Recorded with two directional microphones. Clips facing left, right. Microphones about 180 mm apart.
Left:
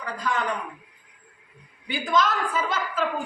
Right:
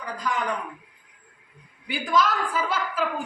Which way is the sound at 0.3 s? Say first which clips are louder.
Left 1 dB; 10° right (ahead or behind).